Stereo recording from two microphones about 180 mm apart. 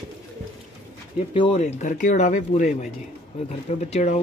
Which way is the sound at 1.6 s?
45° left (ahead or behind).